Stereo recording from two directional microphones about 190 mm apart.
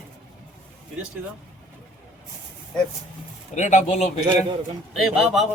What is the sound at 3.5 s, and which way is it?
Speech, 40° left (ahead or behind).